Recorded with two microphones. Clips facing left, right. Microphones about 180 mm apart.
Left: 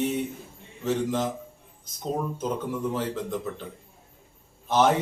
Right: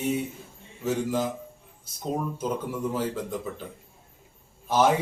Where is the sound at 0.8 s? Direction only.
5° right (ahead or behind).